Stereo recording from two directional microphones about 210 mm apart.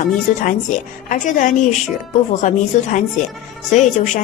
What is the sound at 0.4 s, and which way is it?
A woman's voice, 40° left (ahead or behind).